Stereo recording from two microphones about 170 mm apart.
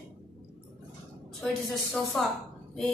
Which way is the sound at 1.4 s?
Centre (ahead or behind).